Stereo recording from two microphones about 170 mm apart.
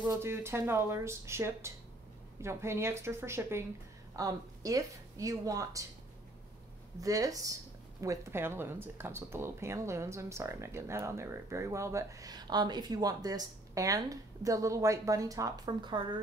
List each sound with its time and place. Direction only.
0.2 s speech: 15° right (ahead or behind)
7.0 s speech: 20° right (ahead or behind)